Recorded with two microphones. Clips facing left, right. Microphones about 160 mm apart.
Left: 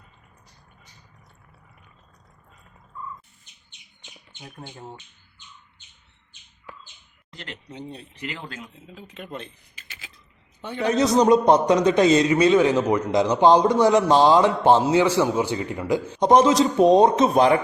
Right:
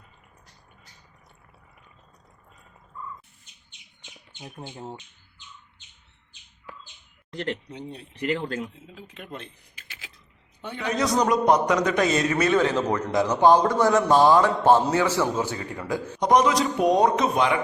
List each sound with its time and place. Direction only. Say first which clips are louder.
4.4 s speech: right 2 dB; 20° right (ahead or behind)
7.7 s speech: left 1 dB; 15° right (ahead or behind)
8.2 s a man's voice: right 9 dB; 50° right (ahead or behind)
9.0 s speech: left 3 dB; 10° right (ahead or behind)
10.8 s a man's voice: left 5 dB; 25° left (ahead or behind)
16.2 s a man's voice: left 4 dB; 25° left (ahead or behind)